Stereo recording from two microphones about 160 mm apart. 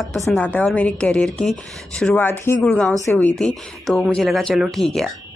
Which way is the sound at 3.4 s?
Centre (ahead or behind).